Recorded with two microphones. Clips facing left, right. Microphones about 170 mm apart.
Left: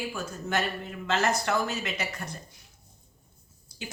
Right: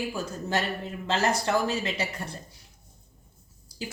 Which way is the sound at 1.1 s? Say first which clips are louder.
Right 1 dB; 30° right (ahead or behind).